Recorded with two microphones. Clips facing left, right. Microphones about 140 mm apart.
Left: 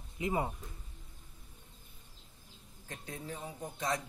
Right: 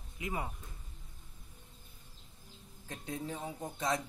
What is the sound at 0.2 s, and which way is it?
Speech, 25° left (ahead or behind).